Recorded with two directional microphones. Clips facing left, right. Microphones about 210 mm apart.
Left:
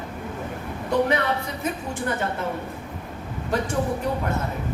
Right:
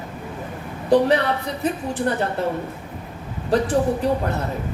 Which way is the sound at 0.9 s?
35° right (ahead or behind).